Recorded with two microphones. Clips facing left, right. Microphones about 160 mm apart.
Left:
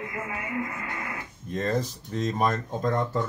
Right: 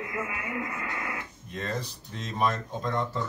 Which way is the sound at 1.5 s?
40° left (ahead or behind).